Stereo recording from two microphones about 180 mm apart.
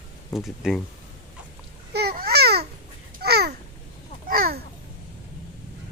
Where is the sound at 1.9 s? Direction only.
60° right (ahead or behind).